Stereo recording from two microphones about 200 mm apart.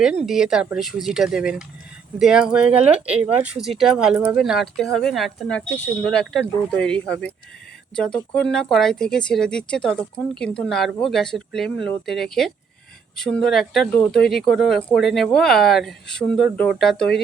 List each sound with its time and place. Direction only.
0.3 s speech: centre (ahead or behind)